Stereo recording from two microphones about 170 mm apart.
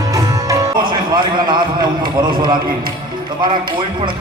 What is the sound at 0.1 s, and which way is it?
Music, 20° right (ahead or behind).